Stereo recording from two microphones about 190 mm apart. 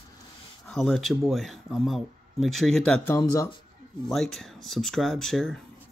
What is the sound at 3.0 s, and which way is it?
Speech, 15° left (ahead or behind).